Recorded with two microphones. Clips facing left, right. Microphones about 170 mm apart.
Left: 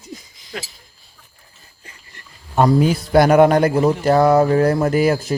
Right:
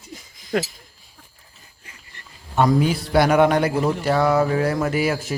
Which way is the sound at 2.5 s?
40° left (ahead or behind).